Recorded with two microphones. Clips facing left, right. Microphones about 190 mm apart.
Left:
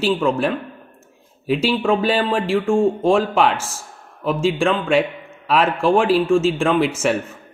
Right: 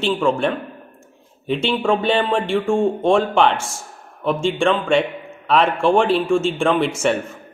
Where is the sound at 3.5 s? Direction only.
30° right (ahead or behind).